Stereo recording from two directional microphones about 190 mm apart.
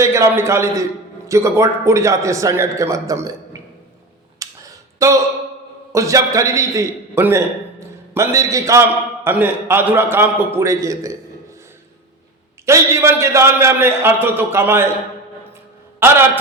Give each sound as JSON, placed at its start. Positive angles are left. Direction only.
{"t": 0.0, "sound": "a man's voice", "side_deg": -15}
{"t": 4.4, "sound": "a sound", "side_deg": -15}
{"t": 4.9, "sound": "a man's voice", "side_deg": -15}
{"t": 12.6, "sound": "a man's voice", "side_deg": -15}
{"t": 16.0, "sound": "a man's voice", "side_deg": -10}